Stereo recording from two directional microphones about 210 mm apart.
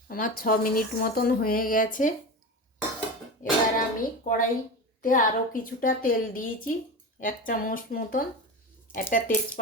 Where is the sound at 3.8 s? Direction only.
40° left (ahead or behind).